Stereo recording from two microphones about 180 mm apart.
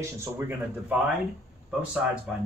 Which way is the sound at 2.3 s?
5° right (ahead or behind).